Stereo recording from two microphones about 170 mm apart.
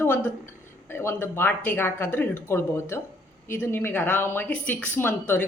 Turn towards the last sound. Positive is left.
turn(degrees=10)  # may be behind; listen again after turning